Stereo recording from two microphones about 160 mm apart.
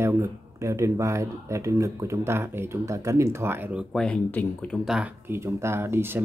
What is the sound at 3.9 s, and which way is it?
Speech, 5° left (ahead or behind).